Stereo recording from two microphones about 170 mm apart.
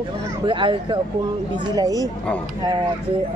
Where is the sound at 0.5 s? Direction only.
30° right (ahead or behind).